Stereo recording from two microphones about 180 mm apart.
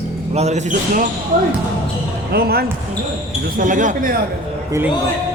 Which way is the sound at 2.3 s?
60° right (ahead or behind).